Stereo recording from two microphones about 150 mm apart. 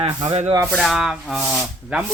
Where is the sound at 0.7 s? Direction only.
Centre (ahead or behind).